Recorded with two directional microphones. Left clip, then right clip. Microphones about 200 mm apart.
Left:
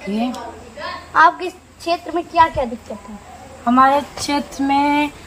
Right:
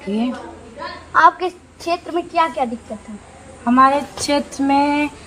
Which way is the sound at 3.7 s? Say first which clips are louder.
Even; 15° right (ahead or behind).